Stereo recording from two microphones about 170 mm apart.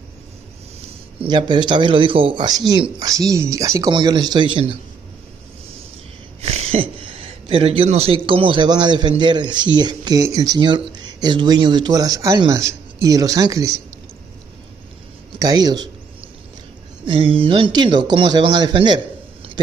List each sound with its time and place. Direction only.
1.2 s speech: 25° right (ahead or behind)
6.4 s speech: 40° right (ahead or behind); by 13.7 s 20° right (ahead or behind)
15.3 s speech: 20° right (ahead or behind)
17.0 s speech: 30° right (ahead or behind)